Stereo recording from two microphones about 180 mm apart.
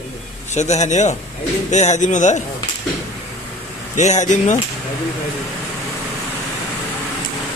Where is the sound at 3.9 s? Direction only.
40° left (ahead or behind).